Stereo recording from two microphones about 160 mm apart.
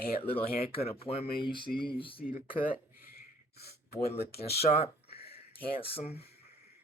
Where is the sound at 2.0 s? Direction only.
35° left (ahead or behind).